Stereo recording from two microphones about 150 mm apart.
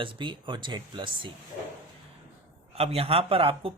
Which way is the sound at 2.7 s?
45° right (ahead or behind).